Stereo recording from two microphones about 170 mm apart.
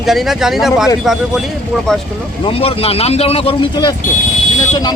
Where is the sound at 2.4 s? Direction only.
35° left (ahead or behind).